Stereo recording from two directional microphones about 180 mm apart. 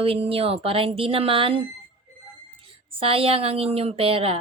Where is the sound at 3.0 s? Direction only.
30° right (ahead or behind).